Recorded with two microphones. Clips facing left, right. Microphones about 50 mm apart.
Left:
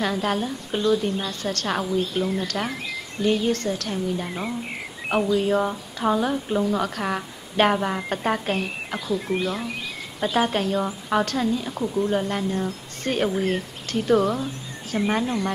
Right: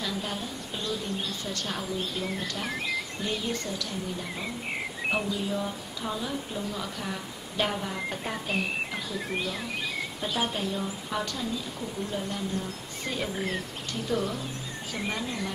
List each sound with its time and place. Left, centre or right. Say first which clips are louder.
0.0 s speech: left 9 dB; left
10.2 s speech: left 9 dB; left
15.0 s speech: left 9 dB; left